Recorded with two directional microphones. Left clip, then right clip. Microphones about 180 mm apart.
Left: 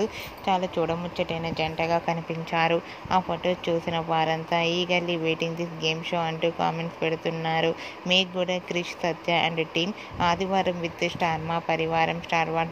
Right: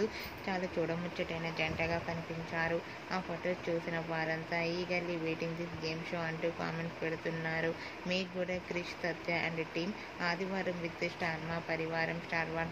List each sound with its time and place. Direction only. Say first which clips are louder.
1.1 s speech: left 9 dB; 30° left (ahead or behind)
2.5 s speech: left 12 dB; 50° left (ahead or behind)